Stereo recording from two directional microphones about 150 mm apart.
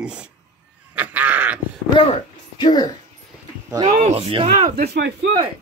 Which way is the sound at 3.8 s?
60° right (ahead or behind).